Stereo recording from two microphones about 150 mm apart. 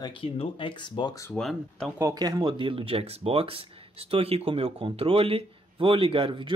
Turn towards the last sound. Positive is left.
turn(degrees=-35)  # may be behind; listen again after turning